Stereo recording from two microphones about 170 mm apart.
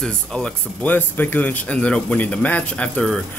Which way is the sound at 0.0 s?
5° left (ahead or behind).